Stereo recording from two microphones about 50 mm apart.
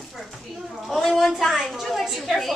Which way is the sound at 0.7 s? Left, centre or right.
Centre.